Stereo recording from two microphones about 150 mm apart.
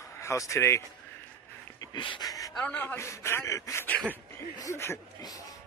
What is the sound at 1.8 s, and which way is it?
Speech, 30° left (ahead or behind).